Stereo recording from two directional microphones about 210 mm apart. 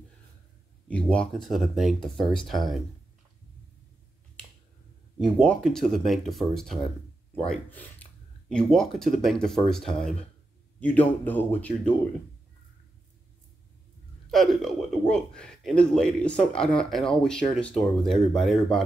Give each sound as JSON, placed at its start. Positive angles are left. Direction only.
{"t": 0.8, "sound": "speech", "side_deg": 5}
{"t": 5.4, "sound": "speech", "side_deg": 5}
{"t": 14.3, "sound": "speech", "side_deg": 0}